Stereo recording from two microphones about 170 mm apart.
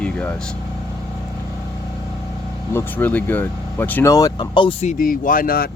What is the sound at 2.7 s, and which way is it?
Speech, 10° left (ahead or behind).